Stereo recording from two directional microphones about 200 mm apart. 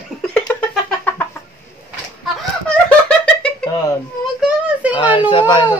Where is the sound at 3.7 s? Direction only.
20° left (ahead or behind).